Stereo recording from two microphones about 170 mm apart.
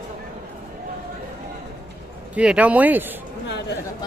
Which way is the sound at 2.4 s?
10° right (ahead or behind).